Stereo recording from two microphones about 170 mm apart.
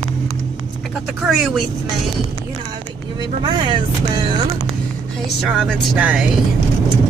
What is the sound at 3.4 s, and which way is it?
Speech, 25° right (ahead or behind).